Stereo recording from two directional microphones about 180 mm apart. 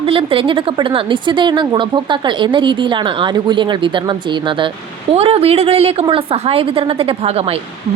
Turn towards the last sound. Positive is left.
turn(degrees=-35)  # may be behind; listen again after turning